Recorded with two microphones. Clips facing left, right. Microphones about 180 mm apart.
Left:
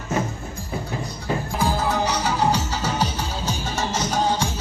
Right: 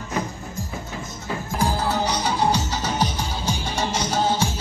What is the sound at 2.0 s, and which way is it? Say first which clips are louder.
Music: even; 10° left (ahead or behind).